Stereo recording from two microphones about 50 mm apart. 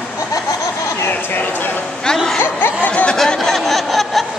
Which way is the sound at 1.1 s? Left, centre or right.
Left.